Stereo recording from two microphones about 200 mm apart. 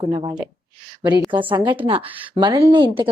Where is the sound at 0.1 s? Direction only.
20° right (ahead or behind).